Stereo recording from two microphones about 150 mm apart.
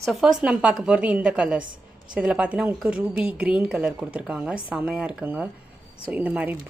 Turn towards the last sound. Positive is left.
turn(degrees=-10)  # may be behind; listen again after turning